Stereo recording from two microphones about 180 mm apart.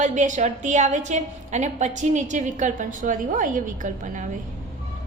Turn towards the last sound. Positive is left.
turn(degrees=-45)  # may be behind; listen again after turning